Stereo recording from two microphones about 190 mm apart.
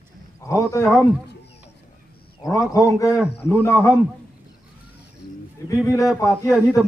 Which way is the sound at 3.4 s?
10° left (ahead or behind).